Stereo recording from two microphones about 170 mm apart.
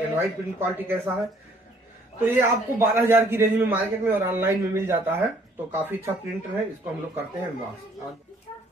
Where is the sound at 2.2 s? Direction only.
15° right (ahead or behind).